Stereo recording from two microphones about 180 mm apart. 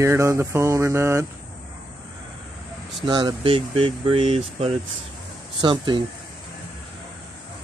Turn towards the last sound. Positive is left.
turn(degrees=-25)  # may be behind; listen again after turning